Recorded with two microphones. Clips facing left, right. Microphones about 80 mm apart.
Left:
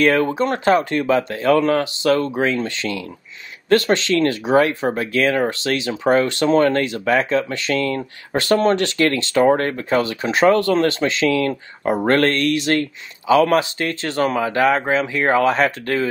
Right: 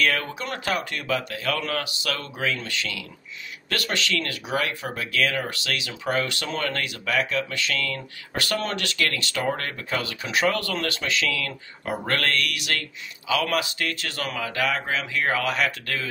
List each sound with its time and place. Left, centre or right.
0.0 s speech: left